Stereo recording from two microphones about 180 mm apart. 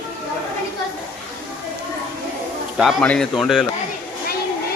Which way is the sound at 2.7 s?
5° left (ahead or behind).